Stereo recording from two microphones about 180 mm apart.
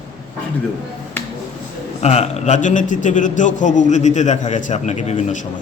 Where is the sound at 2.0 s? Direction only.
35° left (ahead or behind).